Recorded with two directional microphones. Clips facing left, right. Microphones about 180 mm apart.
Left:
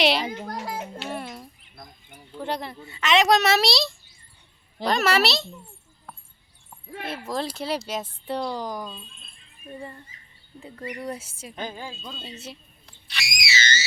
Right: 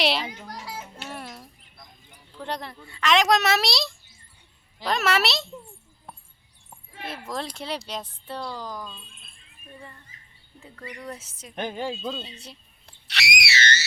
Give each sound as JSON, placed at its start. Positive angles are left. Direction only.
{"t": 0.0, "sound": "a child's voice", "side_deg": 0}
{"t": 0.3, "sound": "children playing", "side_deg": 55}
{"t": 1.1, "sound": "a sound", "side_deg": 0}
{"t": 2.8, "sound": "a woman's voice", "side_deg": 0}
{"t": 7.0, "sound": "a woman's voice", "side_deg": 0}
{"t": 8.3, "sound": "speech", "side_deg": 15}
{"t": 9.7, "sound": "speech", "side_deg": 30}
{"t": 11.5, "sound": "a woman's voice", "side_deg": -65}
{"t": 12.8, "sound": "whistle", "side_deg": -70}